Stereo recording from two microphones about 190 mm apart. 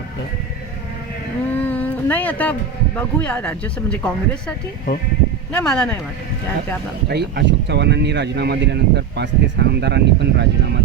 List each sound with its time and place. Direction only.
1.5 s speech: 10° left (ahead or behind)
7.1 s speech: 60° right (ahead or behind)